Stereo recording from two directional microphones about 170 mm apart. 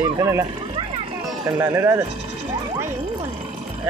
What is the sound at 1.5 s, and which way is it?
Speech, 15° right (ahead or behind).